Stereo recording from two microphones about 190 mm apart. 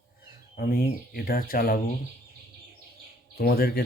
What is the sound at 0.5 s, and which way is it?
Speech, 50° left (ahead or behind).